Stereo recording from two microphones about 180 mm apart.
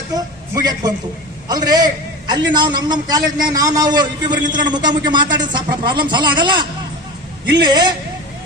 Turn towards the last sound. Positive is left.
turn(degrees=-25)  # may be behind; listen again after turning